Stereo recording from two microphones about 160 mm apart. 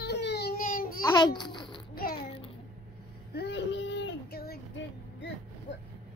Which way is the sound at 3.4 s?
90° left.